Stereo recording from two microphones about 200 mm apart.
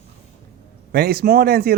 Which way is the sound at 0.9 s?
50° right (ahead or behind).